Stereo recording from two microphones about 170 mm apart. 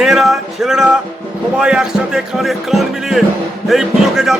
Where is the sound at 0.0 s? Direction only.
Centre (ahead or behind).